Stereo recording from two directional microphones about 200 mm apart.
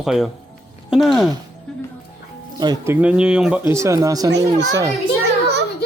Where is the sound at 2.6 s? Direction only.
20° right (ahead or behind).